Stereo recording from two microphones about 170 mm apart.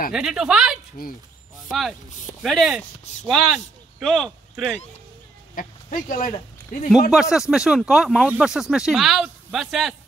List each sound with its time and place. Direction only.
0.1 s speech: 5° right (ahead or behind)
5.5 s speech: 55° left (ahead or behind)
6.9 s speech: 5° right (ahead or behind)